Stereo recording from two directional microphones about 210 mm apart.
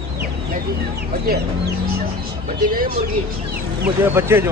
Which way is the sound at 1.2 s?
50° right (ahead or behind).